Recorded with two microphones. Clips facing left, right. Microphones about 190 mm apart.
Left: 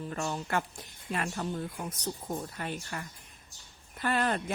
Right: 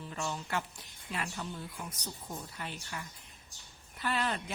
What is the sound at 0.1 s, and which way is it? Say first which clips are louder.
A woman's voice: left 3 dB; 50° left (ahead or behind).